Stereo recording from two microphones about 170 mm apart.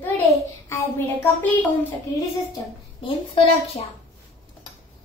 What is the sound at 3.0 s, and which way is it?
Speech, 30° left (ahead or behind).